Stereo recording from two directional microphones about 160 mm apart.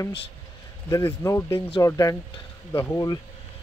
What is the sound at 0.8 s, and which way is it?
Speech, 20° left (ahead or behind).